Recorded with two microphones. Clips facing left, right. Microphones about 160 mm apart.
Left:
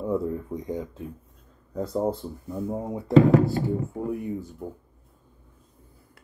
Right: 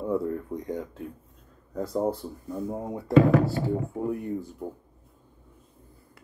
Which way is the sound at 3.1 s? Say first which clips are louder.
Left 2 dB; 30° left (ahead or behind).